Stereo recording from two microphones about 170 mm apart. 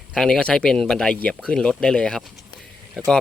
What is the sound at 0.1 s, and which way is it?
Speech, 5° left (ahead or behind).